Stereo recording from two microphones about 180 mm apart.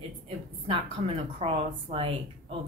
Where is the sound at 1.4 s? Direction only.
35° right (ahead or behind).